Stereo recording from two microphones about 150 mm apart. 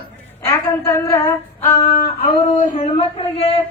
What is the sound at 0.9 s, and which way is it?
Female singing, 15° left (ahead or behind).